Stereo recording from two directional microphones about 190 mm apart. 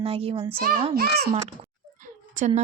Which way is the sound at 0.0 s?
30° right (ahead or behind).